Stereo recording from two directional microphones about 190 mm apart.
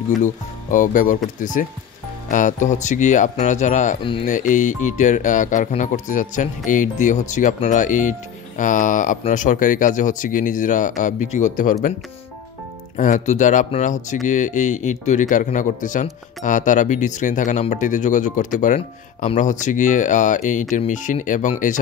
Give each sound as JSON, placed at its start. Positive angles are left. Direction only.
{"t": 0.2, "sound": "speech", "side_deg": 45}
{"t": 4.0, "sound": "speech", "side_deg": 25}
{"t": 4.3, "sound": "speech", "side_deg": 40}
{"t": 12.9, "sound": "speech", "side_deg": 40}